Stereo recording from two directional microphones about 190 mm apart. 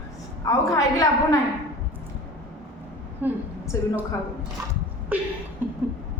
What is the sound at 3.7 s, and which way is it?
Speech, 15° left (ahead or behind).